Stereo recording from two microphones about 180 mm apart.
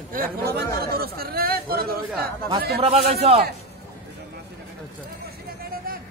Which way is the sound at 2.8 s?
35° right (ahead or behind).